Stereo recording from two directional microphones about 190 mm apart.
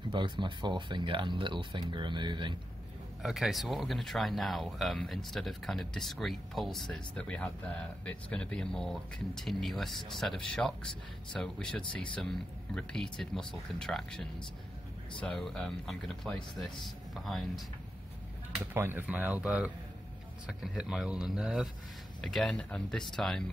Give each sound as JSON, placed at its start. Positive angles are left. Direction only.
{"t": 0.1, "sound": "speech", "side_deg": -25}
{"t": 3.2, "sound": "speech", "side_deg": 0}
{"t": 15.2, "sound": "speech", "side_deg": 5}
{"t": 18.7, "sound": "speech", "side_deg": -10}